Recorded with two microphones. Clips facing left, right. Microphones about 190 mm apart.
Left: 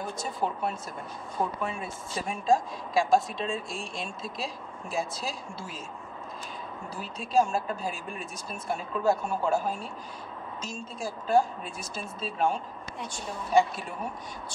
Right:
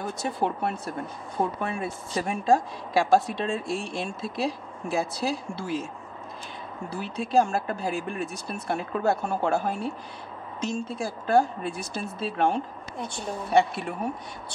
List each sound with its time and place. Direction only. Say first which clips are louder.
0.2 s a woman's voice: right 4 dB; 65° right (ahead or behind)
6.9 s a woman's voice: right 5 dB; 65° right (ahead or behind)